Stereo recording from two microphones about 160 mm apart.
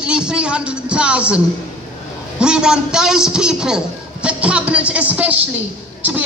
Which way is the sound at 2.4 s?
5° right (ahead or behind).